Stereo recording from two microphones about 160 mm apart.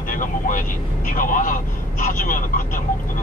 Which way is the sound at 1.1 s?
55° left (ahead or behind).